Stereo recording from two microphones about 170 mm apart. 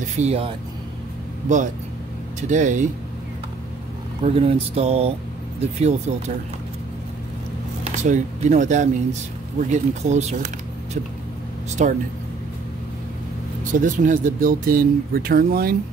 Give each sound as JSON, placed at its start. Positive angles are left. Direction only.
{"t": 0.2, "sound": "speech", "side_deg": -40}
{"t": 2.4, "sound": "speech", "side_deg": -45}
{"t": 4.2, "sound": "speech", "side_deg": -35}
{"t": 7.8, "sound": "speech", "side_deg": -45}
{"t": 11.8, "sound": "speech", "side_deg": -45}
{"t": 13.7, "sound": "speech", "side_deg": -50}